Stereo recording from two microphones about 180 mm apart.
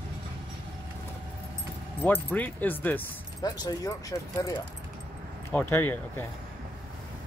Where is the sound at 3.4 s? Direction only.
20° left (ahead or behind).